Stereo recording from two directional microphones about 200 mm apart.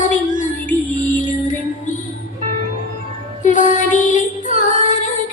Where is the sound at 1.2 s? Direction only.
40° left (ahead or behind).